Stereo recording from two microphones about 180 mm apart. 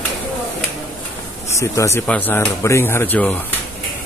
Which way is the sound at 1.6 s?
15° left (ahead or behind).